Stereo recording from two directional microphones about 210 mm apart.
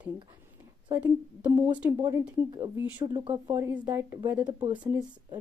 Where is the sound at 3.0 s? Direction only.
20° right (ahead or behind).